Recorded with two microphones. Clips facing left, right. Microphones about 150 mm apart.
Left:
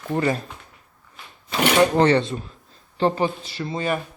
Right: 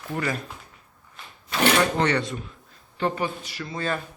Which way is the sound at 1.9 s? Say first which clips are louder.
Left 6 dB; 30° left (ahead or behind).